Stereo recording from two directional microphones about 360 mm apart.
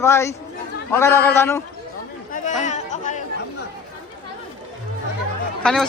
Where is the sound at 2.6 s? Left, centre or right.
Centre.